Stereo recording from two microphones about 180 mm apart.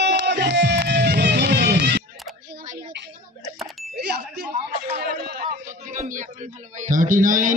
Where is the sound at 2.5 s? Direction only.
50° right (ahead or behind).